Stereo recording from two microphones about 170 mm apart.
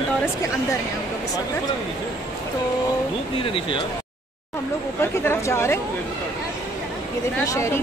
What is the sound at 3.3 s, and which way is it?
Speech, 30° left (ahead or behind).